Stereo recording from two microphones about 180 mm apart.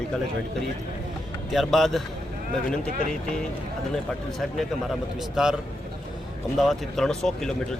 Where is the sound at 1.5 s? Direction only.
Centre (ahead or behind).